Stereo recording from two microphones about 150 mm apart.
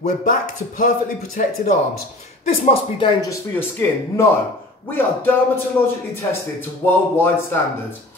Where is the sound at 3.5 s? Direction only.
15° left (ahead or behind).